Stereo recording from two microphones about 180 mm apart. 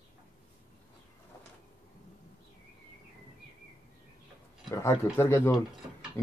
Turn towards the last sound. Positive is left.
turn(degrees=15)  # may be behind; listen again after turning